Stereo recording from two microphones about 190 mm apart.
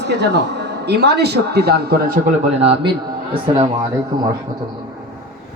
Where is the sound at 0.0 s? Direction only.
65° right (ahead or behind).